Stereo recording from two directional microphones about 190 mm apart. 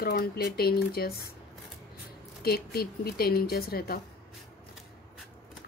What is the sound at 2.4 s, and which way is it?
A woman's voice, 55° left (ahead or behind).